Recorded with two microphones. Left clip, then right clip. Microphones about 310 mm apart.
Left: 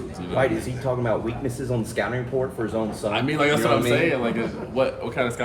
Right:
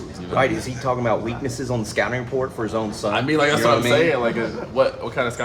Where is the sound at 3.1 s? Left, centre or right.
Centre.